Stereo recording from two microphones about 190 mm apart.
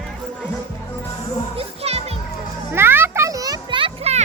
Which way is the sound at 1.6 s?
30° right (ahead or behind).